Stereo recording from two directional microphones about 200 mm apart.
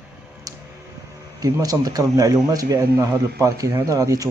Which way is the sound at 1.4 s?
20° right (ahead or behind).